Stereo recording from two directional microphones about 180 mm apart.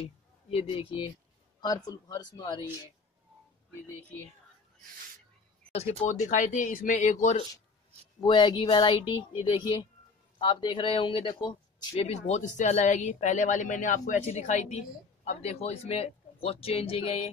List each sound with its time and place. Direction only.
0.0 s speech: 35° left (ahead or behind)
5.7 s speech: 35° left (ahead or behind)
8.2 s speech: 25° left (ahead or behind)